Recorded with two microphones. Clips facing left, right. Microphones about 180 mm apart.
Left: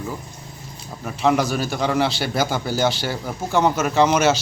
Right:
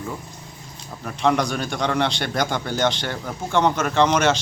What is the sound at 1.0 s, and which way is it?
A man's voice, 5° left (ahead or behind).